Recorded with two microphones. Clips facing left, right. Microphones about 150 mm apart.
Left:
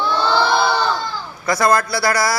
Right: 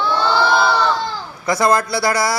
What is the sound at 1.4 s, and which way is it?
Speech, 20° right (ahead or behind).